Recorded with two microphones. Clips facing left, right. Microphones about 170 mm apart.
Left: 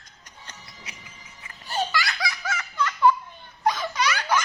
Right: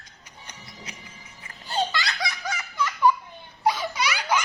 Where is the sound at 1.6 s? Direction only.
20° right (ahead or behind).